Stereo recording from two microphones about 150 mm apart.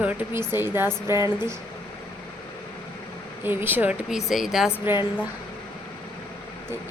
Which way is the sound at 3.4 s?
15° right (ahead or behind).